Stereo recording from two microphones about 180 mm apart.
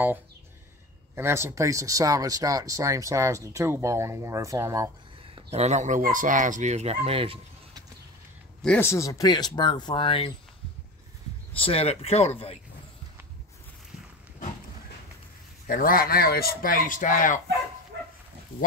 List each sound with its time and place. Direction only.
1.1 s speech: 15° right (ahead or behind)
5.5 s speech: 40° right (ahead or behind)
7.1 s a sound: 30° right (ahead or behind)
8.6 s speech: 15° left (ahead or behind); by 10.3 s 30° left (ahead or behind)
11.5 s speech: 30° left (ahead or behind)
15.6 s speech: 50° left (ahead or behind)